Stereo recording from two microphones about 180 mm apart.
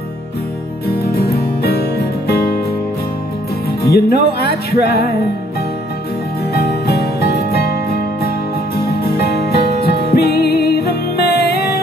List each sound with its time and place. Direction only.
0.8 s music: 60° left (ahead or behind)
3.8 s speech: 60° left (ahead or behind)
6.5 s music: 60° left (ahead or behind)
8.7 s music: 60° left (ahead or behind)